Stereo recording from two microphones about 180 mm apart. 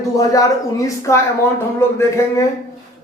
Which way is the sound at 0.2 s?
20° left (ahead or behind).